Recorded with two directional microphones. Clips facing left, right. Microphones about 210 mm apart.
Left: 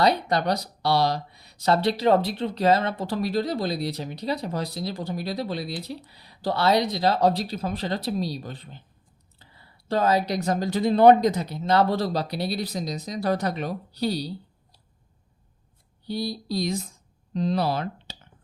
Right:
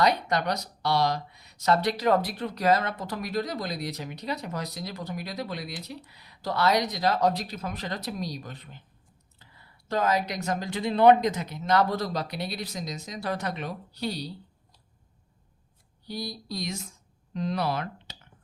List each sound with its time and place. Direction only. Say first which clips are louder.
0.0 s speech: left 3 dB; 30° left (ahead or behind)
16.0 s speech: left 6 dB; 30° left (ahead or behind)